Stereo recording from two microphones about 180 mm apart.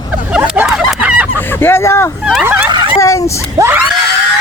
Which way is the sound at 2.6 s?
25° right (ahead or behind).